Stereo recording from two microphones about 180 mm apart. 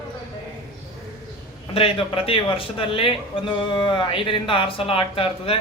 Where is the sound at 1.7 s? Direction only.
30° left (ahead or behind).